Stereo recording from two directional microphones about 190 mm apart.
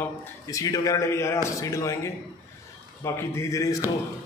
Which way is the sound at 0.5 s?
15° left (ahead or behind).